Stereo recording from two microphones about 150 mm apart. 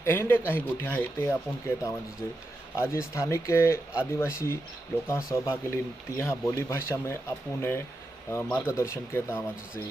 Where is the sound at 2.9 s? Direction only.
20° left (ahead or behind).